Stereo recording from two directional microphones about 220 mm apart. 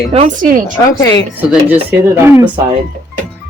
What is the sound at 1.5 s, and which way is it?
Speech, 10° right (ahead or behind).